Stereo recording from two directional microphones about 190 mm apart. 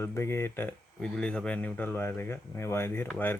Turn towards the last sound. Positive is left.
turn(degrees=10)  # may be behind; listen again after turning